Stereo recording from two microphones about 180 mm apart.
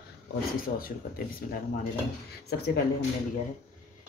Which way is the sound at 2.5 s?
65° left (ahead or behind).